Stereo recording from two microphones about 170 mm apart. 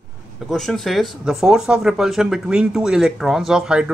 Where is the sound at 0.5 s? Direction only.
Centre (ahead or behind).